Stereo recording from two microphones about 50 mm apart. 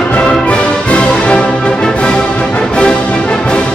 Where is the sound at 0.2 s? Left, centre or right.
Left.